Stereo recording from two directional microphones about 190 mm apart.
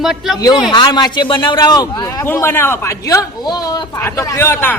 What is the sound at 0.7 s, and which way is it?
A man's voice, 25° left (ahead or behind).